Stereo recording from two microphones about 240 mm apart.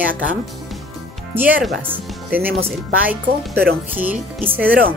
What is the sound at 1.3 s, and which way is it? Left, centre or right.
Speech, centre.